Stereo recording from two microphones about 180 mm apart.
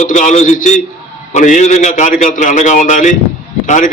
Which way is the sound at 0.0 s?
45° left (ahead or behind).